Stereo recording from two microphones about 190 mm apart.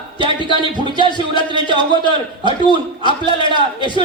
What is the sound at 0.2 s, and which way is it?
Speech, 25° right (ahead or behind).